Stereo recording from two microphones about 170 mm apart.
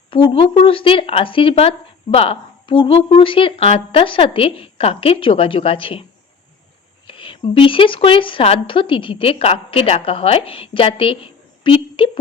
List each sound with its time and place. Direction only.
0.1 s speech: 30° left (ahead or behind)
7.1 s speech: 30° left (ahead or behind)